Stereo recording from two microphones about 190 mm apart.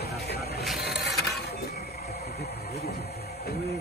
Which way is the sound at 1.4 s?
60° left (ahead or behind).